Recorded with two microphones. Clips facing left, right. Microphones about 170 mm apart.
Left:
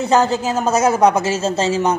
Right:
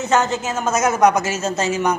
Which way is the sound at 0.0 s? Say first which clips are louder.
Left 3 dB; 35° left (ahead or behind).